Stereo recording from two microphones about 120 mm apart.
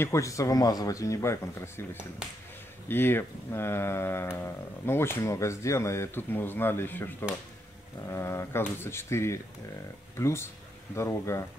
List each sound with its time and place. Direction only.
0.0 s speech: 25° left (ahead or behind)
2.9 s speech: 20° left (ahead or behind)